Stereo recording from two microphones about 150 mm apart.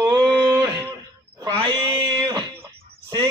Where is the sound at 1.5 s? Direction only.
35° right (ahead or behind).